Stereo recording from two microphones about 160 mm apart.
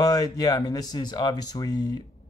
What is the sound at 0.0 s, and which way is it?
Speech, 25° left (ahead or behind).